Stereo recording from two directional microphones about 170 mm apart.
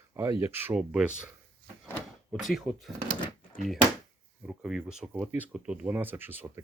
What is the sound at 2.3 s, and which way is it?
Speech, centre (ahead or behind).